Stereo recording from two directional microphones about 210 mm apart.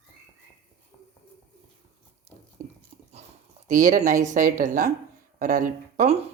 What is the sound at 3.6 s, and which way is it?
Speech, 35° right (ahead or behind).